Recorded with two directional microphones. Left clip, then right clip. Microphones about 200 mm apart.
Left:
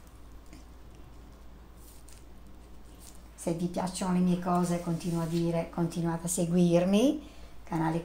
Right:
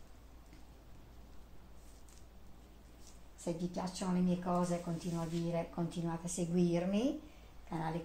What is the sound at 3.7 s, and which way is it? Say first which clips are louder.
Speech: left 7 dB; 30° left (ahead or behind).